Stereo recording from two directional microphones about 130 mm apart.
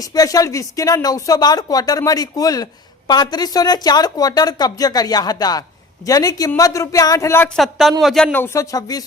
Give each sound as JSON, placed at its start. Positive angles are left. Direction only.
{"t": 0.0, "sound": "speech", "side_deg": 25}
{"t": 7.5, "sound": "speech", "side_deg": 0}
{"t": 8.3, "sound": "speech", "side_deg": 20}